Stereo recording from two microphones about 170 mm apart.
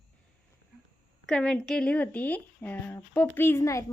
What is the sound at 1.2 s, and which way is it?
A woman's voice, 5° left (ahead or behind).